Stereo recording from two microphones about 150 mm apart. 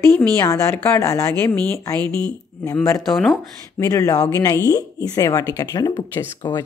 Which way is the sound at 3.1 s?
Centre (ahead or behind).